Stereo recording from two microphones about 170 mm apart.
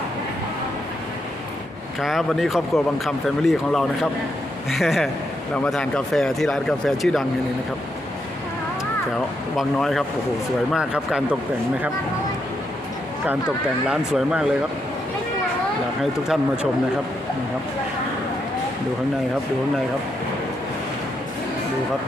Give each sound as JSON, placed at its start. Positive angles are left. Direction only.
{"t": 2.0, "sound": "speech", "side_deg": 0}
{"t": 9.6, "sound": "speech", "side_deg": 0}
{"t": 13.8, "sound": "speech", "side_deg": -5}